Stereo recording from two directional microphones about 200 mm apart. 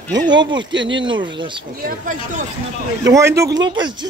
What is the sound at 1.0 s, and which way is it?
Speech, 25° right (ahead or behind).